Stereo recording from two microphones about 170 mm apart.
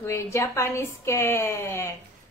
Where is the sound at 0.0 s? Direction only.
15° left (ahead or behind).